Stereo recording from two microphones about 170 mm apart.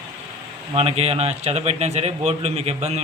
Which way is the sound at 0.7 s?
35° right (ahead or behind).